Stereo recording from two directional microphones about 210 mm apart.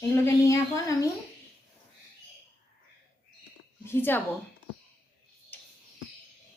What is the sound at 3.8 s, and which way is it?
Speech, 10° left (ahead or behind).